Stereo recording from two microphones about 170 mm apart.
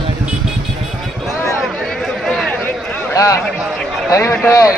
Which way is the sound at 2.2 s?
Centre (ahead or behind).